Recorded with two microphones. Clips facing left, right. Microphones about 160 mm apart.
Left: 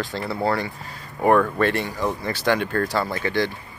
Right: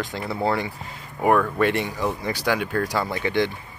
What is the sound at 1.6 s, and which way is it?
Speech, 15° right (ahead or behind).